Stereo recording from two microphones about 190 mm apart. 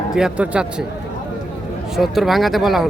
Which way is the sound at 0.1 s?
5° right (ahead or behind).